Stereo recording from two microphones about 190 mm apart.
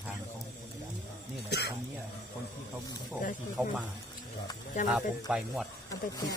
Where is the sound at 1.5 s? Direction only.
60° left (ahead or behind).